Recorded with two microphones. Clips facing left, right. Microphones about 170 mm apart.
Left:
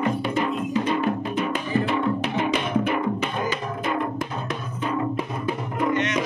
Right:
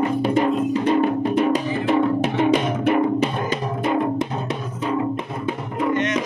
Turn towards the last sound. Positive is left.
turn(degrees=-50)  # may be behind; listen again after turning